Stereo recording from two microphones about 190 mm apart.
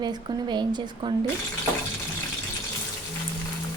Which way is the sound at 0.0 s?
20° right (ahead or behind).